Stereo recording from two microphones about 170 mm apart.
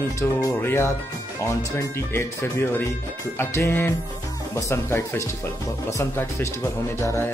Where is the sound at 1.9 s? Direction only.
15° left (ahead or behind).